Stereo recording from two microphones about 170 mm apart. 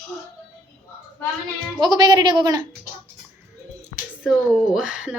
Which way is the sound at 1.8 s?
25° right (ahead or behind).